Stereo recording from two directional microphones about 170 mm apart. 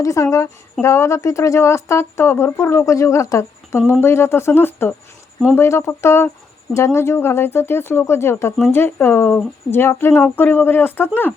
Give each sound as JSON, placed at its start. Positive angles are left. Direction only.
{"t": 0.0, "sound": "a woman's voice", "side_deg": 20}